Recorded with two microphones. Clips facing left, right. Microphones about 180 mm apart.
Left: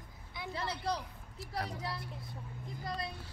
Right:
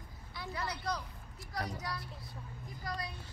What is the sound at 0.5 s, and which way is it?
Vehicle, 25° left (ahead or behind).